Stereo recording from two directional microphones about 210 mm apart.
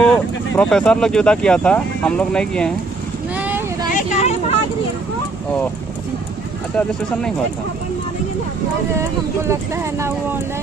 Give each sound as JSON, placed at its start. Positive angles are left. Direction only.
{"t": 0.0, "sound": "speech", "side_deg": 5}
{"t": 3.3, "sound": "boat", "side_deg": -10}
{"t": 3.9, "sound": "vehicle", "side_deg": 35}
{"t": 9.4, "sound": "speech", "side_deg": -15}